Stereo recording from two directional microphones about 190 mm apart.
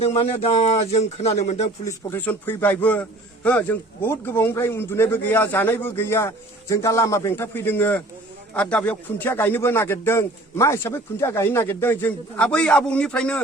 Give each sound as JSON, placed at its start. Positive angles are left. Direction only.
{"t": 0.0, "sound": "speech", "side_deg": 30}
{"t": 2.0, "sound": "a man's voice", "side_deg": 10}